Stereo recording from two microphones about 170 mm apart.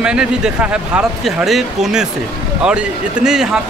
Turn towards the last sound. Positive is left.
turn(degrees=-5)  # may be behind; listen again after turning